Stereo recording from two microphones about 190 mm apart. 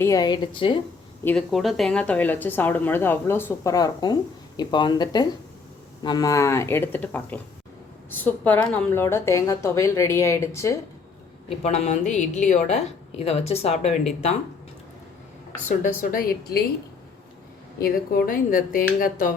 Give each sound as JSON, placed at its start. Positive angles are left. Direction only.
{"t": 0.0, "sound": "speech", "side_deg": 20}
{"t": 1.2, "sound": "speech", "side_deg": 10}
{"t": 11.6, "sound": "a woman's voice", "side_deg": 35}
{"t": 15.7, "sound": "speech", "side_deg": 45}
{"t": 17.7, "sound": "speech", "side_deg": 50}